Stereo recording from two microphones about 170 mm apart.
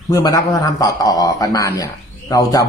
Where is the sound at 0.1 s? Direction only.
20° left (ahead or behind).